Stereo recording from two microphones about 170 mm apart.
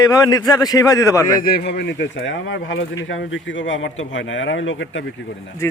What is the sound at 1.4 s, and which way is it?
Speech, 65° left (ahead or behind).